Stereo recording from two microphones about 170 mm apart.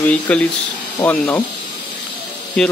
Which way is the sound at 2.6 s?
Centre (ahead or behind).